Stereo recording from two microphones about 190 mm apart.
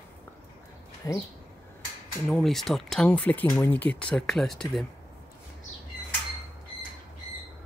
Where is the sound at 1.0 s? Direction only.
20° left (ahead or behind).